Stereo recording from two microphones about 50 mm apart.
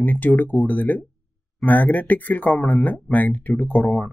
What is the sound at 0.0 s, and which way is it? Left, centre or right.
Speech, left.